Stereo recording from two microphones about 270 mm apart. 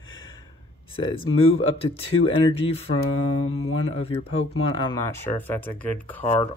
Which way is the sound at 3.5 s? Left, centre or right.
Left.